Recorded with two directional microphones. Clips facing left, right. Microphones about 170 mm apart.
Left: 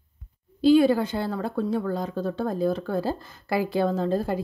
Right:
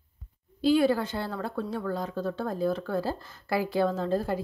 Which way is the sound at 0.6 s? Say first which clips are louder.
Left 5 dB; 20° left (ahead or behind).